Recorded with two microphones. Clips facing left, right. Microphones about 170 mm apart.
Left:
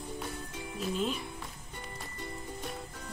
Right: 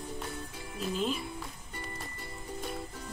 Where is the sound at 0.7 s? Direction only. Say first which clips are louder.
Even; centre (ahead or behind).